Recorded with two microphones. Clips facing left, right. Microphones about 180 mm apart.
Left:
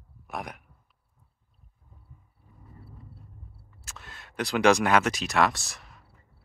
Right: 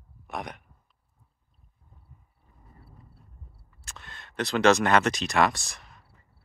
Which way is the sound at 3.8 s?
5° left (ahead or behind).